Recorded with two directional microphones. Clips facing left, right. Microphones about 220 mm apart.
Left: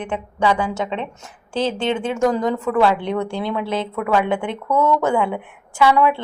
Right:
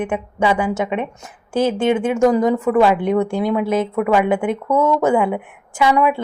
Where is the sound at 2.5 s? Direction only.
15° right (ahead or behind).